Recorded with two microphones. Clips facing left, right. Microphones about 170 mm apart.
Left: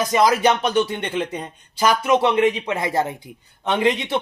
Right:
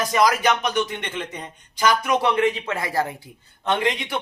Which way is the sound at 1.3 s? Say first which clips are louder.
Left 5 dB; 30° left (ahead or behind).